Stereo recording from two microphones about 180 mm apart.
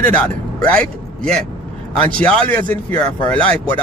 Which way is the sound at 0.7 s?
5° left (ahead or behind).